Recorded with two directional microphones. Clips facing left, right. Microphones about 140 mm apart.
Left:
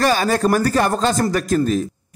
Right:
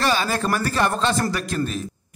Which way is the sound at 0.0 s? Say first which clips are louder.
Left 5 dB; 45° left (ahead or behind).